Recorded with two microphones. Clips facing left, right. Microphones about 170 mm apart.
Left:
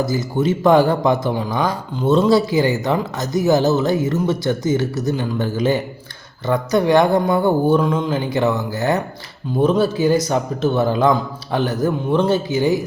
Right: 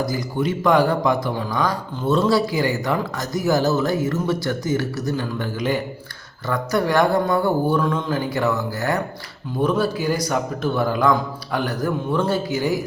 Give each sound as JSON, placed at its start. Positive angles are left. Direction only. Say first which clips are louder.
{"t": 0.0, "sound": "speech", "louder": "left 4 dB", "side_deg": 25}